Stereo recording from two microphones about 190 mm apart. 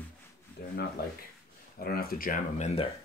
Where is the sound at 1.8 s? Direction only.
50° left (ahead or behind); by 2.8 s 35° left (ahead or behind).